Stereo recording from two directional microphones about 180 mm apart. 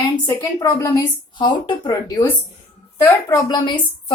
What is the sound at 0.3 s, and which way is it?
A woman's voice, 20° left (ahead or behind).